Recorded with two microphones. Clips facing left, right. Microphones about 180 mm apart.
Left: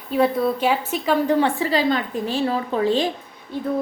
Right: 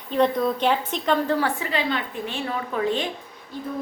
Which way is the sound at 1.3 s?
30° left (ahead or behind).